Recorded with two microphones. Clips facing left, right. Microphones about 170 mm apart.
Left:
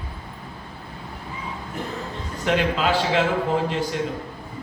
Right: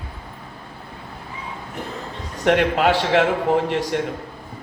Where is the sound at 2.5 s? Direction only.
65° right (ahead or behind).